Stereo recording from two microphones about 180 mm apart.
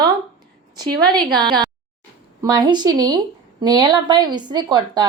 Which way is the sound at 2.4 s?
20° right (ahead or behind).